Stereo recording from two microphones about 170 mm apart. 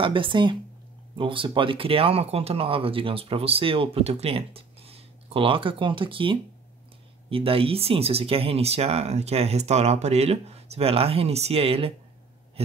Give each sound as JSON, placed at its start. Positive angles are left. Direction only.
{"t": 0.0, "sound": "speech", "side_deg": -30}